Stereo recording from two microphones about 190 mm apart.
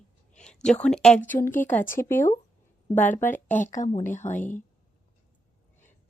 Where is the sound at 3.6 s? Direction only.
40° left (ahead or behind).